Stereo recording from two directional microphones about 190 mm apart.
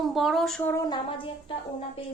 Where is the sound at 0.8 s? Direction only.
25° left (ahead or behind).